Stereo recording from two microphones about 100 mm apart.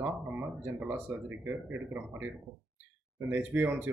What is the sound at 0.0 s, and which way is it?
Speech, 15° right (ahead or behind).